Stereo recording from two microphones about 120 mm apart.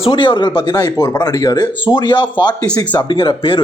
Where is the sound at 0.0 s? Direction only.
45° left (ahead or behind).